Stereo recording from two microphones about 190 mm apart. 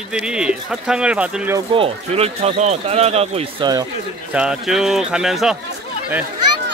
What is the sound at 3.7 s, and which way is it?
Speech, 20° right (ahead or behind).